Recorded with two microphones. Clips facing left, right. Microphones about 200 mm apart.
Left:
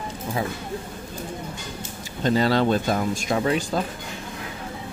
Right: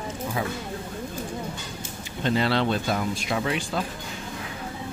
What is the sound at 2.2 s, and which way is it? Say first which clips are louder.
Speech: left 3 dB; 40° left (ahead or behind).